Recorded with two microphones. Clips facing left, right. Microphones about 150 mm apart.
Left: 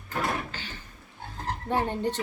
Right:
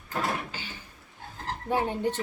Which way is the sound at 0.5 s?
10° right (ahead or behind).